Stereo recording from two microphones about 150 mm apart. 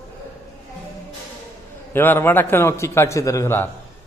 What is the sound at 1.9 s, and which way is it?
A man's voice, 15° left (ahead or behind).